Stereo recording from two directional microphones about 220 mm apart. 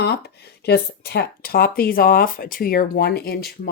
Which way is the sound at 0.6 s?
45° left (ahead or behind).